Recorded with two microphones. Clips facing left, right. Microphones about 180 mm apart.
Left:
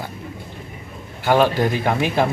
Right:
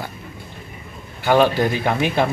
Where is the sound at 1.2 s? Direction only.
5° left (ahead or behind).